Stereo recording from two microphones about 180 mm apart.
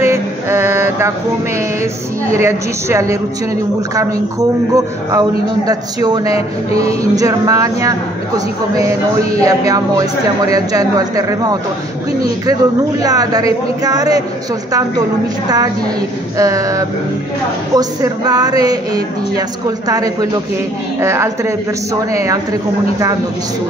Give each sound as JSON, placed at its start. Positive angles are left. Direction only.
{"t": 0.0, "sound": "a sound", "side_deg": -15}
{"t": 2.3, "sound": "a woman's voice", "side_deg": -15}
{"t": 9.4, "sound": "a man's voice", "side_deg": -20}
{"t": 13.0, "sound": "a man's voice", "side_deg": -20}
{"t": 16.3, "sound": "a man's voice", "side_deg": -20}